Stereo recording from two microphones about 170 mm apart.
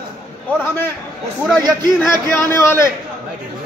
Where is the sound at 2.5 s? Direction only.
15° left (ahead or behind).